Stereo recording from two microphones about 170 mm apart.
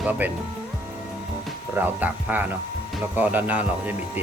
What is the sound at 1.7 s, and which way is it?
Speech, 10° right (ahead or behind).